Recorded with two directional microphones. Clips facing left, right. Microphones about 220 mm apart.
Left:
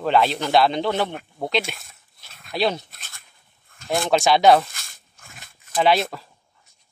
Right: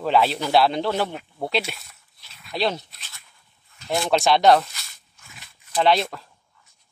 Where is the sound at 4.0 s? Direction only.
Centre (ahead or behind).